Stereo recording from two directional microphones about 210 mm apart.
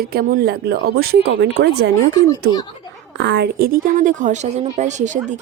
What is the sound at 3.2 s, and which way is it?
A woman's voice, 55° right (ahead or behind).